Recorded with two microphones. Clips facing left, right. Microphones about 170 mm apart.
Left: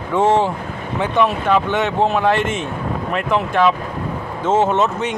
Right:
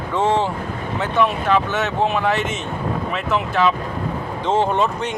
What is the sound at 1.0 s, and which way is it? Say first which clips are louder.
Speech: left 2 dB; 15° left (ahead or behind).